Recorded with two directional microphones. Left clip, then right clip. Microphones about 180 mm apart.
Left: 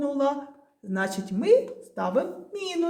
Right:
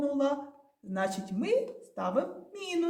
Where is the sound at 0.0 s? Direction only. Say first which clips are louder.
Left 4 dB; 25° left (ahead or behind).